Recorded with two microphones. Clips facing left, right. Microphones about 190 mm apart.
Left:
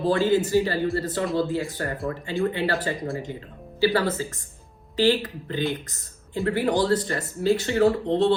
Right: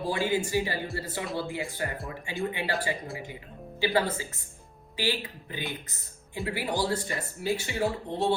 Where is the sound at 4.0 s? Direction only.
15° right (ahead or behind).